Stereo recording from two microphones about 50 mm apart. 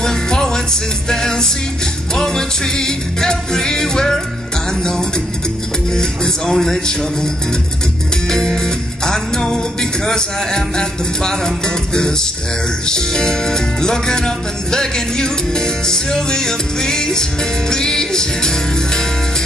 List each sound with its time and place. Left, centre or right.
0.0 s music: centre
5.9 s speech: centre
8.3 s music: centre